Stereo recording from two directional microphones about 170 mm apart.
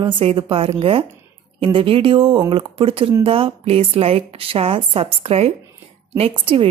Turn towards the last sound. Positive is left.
turn(degrees=-35)  # may be behind; listen again after turning